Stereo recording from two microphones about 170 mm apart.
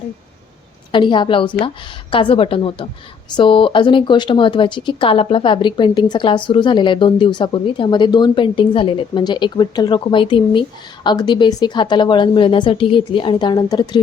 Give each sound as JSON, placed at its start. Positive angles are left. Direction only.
{"t": 0.9, "sound": "speech", "side_deg": 30}